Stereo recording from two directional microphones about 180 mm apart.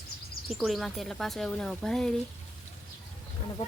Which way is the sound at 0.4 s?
Centre (ahead or behind).